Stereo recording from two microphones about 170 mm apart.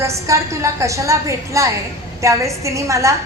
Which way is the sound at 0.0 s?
15° right (ahead or behind).